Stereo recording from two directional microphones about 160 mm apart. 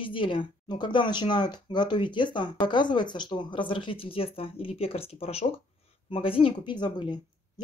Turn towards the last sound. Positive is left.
turn(degrees=30)  # may be behind; listen again after turning